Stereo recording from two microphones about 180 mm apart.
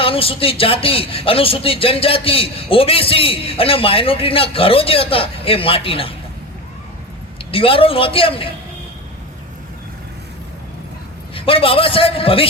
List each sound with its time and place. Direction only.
0.0 s speech: 30° left (ahead or behind)
7.5 s speech: 30° left (ahead or behind)
11.3 s speech: 30° left (ahead or behind)